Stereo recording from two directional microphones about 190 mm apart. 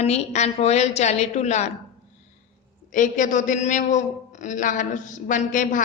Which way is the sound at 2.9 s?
45° left (ahead or behind).